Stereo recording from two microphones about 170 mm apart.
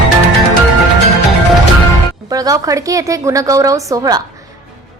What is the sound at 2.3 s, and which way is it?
A woman's voice, 20° right (ahead or behind).